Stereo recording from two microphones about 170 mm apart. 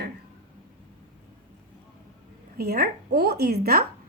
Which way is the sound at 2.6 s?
65° right (ahead or behind).